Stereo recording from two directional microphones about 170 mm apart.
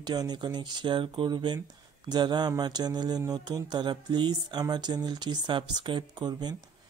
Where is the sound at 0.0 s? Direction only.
25° right (ahead or behind).